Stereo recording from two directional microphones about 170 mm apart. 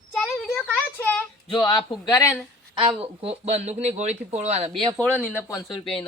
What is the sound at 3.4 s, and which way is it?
Speech, 40° right (ahead or behind).